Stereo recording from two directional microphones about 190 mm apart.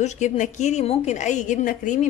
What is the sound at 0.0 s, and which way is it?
Speech, 40° left (ahead or behind).